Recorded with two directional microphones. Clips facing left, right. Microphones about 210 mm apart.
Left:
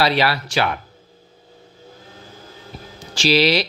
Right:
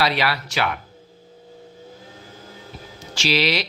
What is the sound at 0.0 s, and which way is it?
Speech, 30° left (ahead or behind).